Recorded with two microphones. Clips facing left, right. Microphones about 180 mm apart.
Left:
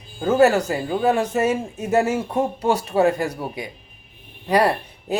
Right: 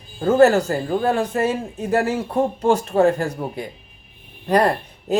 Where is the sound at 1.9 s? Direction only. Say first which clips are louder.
Left 1 dB; 20° left (ahead or behind).